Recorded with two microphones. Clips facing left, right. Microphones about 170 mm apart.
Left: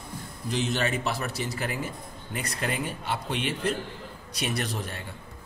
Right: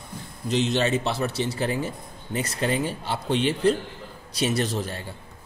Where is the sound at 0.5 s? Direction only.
20° right (ahead or behind).